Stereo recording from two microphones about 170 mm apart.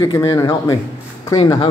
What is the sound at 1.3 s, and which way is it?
Speech, 30° left (ahead or behind).